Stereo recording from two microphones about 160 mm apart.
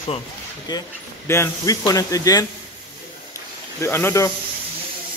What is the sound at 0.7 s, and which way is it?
Speech, 25° left (ahead or behind).